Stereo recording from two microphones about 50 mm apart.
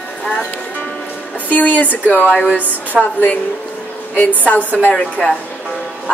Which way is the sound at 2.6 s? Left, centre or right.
Right.